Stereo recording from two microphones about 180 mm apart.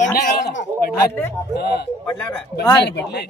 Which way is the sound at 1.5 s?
65° left (ahead or behind).